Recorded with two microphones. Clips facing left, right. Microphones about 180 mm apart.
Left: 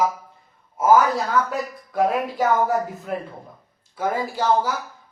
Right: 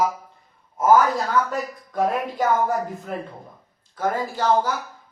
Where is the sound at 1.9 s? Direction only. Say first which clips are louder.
Left 2 dB; 5° left (ahead or behind).